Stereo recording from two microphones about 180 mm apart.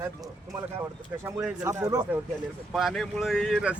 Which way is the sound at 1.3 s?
15° right (ahead or behind).